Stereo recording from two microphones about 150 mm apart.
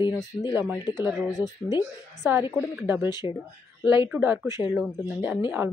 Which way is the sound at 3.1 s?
30° left (ahead or behind).